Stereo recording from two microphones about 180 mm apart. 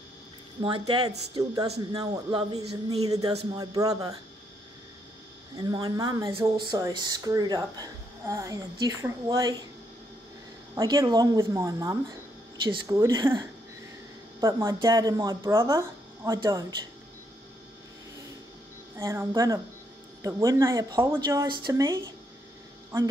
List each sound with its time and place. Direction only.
0.6 s speech: 25° right (ahead or behind)
5.6 s speech: 20° right (ahead or behind)
10.7 s speech: 20° right (ahead or behind)
18.9 s speech: 15° right (ahead or behind)